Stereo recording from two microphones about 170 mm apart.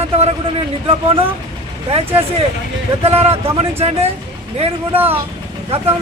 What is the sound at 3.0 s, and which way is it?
Speech, 35° right (ahead or behind).